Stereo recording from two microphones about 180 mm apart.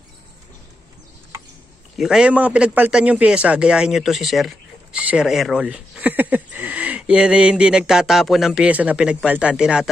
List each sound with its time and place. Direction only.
2.0 s a man's voice: 5° right (ahead or behind)